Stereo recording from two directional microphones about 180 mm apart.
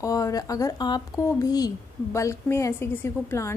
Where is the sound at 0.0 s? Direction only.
20° left (ahead or behind).